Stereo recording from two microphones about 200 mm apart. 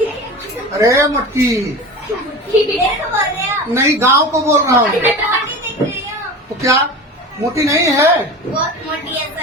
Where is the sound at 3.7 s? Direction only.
15° right (ahead or behind).